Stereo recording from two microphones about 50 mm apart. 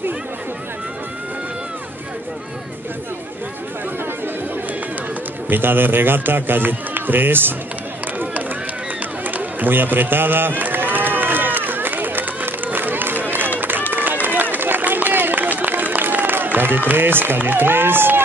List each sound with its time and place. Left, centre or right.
5.5 s a man's voice: right
9.2 s a sound: right
13.6 s run: right
15.6 s applause: right